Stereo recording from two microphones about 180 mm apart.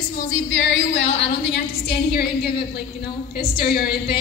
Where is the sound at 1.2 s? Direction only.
75° left (ahead or behind).